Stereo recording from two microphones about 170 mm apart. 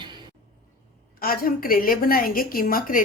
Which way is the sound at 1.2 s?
60° left (ahead or behind).